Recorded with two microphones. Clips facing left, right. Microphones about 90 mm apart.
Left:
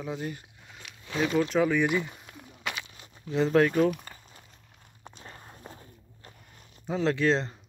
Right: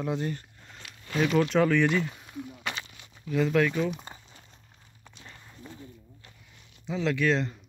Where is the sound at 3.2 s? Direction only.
30° left (ahead or behind); by 4.0 s 50° left (ahead or behind).